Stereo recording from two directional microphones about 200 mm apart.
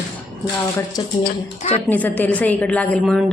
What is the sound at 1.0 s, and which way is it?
Speech, 20° left (ahead or behind).